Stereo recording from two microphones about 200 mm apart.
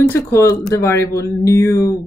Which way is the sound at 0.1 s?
15° left (ahead or behind).